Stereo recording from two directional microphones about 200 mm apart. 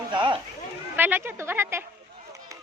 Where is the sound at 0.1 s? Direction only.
25° right (ahead or behind).